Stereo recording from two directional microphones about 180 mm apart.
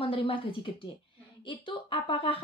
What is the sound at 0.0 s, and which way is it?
Speech, 30° left (ahead or behind).